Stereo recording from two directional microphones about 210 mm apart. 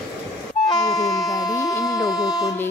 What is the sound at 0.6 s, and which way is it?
Vehicle, 20° left (ahead or behind).